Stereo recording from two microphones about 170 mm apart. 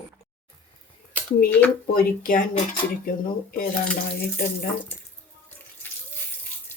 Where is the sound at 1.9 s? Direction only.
60° left (ahead or behind).